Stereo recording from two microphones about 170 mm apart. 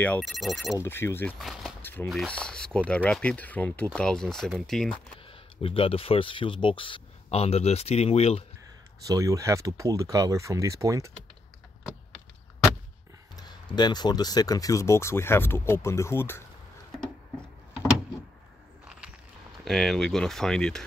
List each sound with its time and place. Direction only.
0.0 s speech: 5° left (ahead or behind)
0.7 s speech: 15° left (ahead or behind)
1.4 s speech: centre (ahead or behind)
1.8 s a sound: 10° left (ahead or behind)
2.0 s speech: 5° left (ahead or behind)
5.1 s speech: 35° left (ahead or behind)
9.0 s speech: 20° right (ahead or behind)
13.4 s speech: 25° left (ahead or behind)
19.6 s speech: centre (ahead or behind)